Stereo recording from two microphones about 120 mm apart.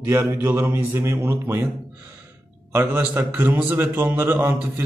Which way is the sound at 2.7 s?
20° right (ahead or behind).